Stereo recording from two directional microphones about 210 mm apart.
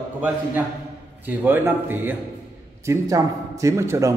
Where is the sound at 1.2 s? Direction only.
10° right (ahead or behind).